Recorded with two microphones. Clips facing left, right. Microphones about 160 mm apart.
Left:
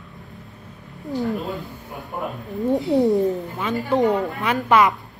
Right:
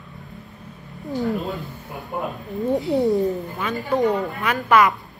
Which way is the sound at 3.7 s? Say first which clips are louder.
Left 1 dB; 20° left (ahead or behind).